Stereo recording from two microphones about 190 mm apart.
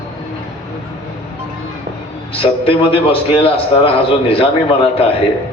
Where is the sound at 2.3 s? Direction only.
30° left (ahead or behind).